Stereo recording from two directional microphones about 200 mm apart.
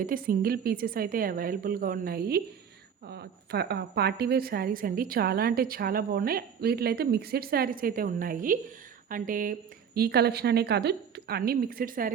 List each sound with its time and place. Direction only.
0.0 s a woman's voice: 45° right (ahead or behind)